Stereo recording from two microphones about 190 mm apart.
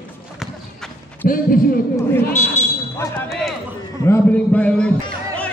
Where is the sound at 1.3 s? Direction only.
50° left (ahead or behind).